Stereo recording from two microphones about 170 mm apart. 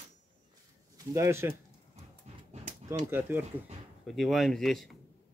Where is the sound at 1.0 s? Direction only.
15° right (ahead or behind).